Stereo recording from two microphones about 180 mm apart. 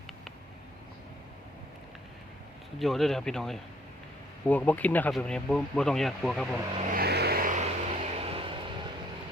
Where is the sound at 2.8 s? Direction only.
Centre (ahead or behind).